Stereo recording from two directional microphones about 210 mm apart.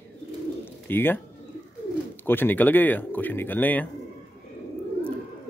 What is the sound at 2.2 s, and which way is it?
A man's voice, 10° left (ahead or behind).